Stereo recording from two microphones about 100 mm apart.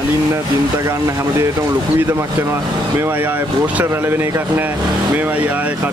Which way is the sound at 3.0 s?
20° right (ahead or behind).